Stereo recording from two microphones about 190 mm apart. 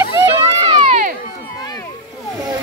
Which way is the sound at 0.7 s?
30° right (ahead or behind).